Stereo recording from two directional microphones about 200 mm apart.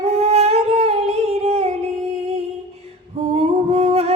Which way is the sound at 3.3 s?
30° right (ahead or behind).